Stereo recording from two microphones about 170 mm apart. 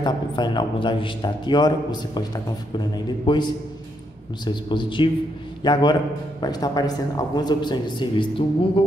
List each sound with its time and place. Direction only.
0.0 s a man's voice: 25° left (ahead or behind)
4.5 s a man's voice: 30° left (ahead or behind)